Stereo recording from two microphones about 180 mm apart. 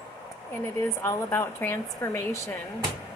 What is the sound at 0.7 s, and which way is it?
A woman's voice, 15° left (ahead or behind).